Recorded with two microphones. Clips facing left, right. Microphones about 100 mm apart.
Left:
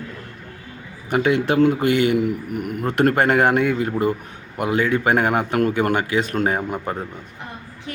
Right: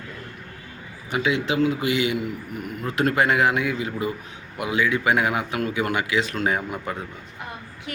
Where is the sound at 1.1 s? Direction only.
50° left (ahead or behind).